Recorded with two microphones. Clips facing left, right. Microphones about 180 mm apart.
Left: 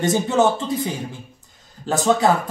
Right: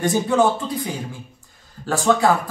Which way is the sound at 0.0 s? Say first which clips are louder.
Even; 20° left (ahead or behind).